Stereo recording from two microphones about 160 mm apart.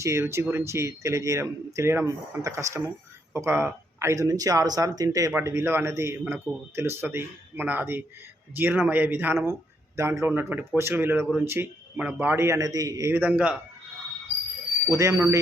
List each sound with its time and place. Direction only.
0.0 s speech: 15° right (ahead or behind)
14.9 s speech: 20° right (ahead or behind)